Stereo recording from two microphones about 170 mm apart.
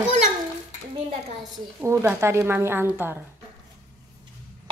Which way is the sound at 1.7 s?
15° right (ahead or behind).